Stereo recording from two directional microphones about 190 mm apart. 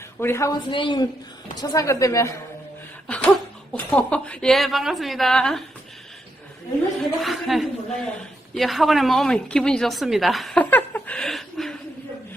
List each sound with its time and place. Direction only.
0.2 s speech: 15° left (ahead or behind)
0.7 s a man's voice: 25° left (ahead or behind)
3.1 s a woman's voice: 5° left (ahead or behind)
7.2 s a woman's voice: centre (ahead or behind)